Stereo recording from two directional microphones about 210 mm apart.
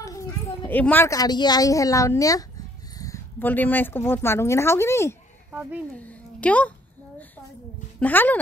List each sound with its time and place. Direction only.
0.0 s speech: 15° left (ahead or behind)
5.5 s speech: 5° right (ahead or behind)
5.9 s a woman's voice: 5° left (ahead or behind)
8.0 s speech: 10° left (ahead or behind)